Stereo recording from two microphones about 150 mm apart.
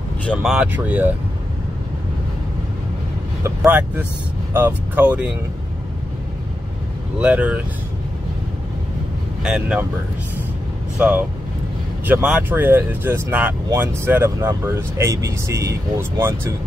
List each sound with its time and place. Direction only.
0.2 s speech: 5° left (ahead or behind)
3.6 s speech: 10° right (ahead or behind)
7.2 s speech: 10° right (ahead or behind)
9.4 s speech: 5° right (ahead or behind)
11.0 s speech: 10° right (ahead or behind)